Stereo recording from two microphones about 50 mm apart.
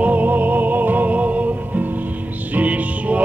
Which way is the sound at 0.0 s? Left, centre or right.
Right.